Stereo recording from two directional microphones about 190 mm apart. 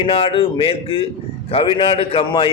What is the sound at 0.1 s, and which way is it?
A man's voice, 30° left (ahead or behind).